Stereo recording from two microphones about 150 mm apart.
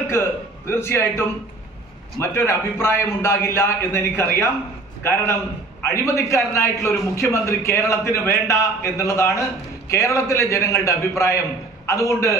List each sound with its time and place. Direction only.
0.1 s a man's voice: 15° left (ahead or behind)
5.8 s a man's voice: 20° left (ahead or behind)